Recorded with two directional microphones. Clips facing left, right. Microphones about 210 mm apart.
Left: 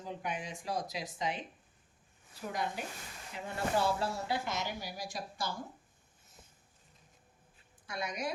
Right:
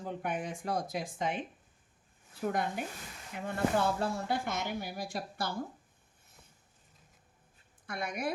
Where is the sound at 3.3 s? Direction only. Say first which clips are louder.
Right 3 dB; 55° right (ahead or behind).